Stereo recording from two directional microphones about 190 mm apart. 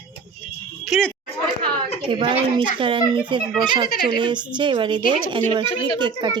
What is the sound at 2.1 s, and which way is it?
Speech, 25° right (ahead or behind).